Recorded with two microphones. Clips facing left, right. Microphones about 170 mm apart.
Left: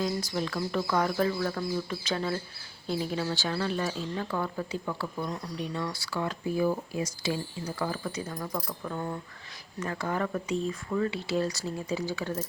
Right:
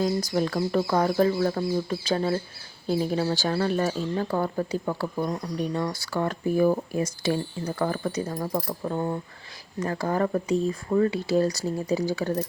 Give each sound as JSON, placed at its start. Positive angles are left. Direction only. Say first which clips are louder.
{"t": 0.0, "sound": "speech", "louder": "right 6 dB", "side_deg": -40}
{"t": 8.0, "sound": "speech", "louder": "right 6 dB", "side_deg": -40}